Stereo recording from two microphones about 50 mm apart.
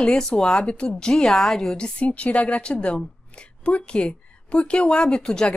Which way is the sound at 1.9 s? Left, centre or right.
Left.